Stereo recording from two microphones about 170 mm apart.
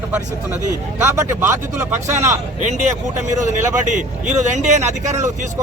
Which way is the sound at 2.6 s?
45° right (ahead or behind).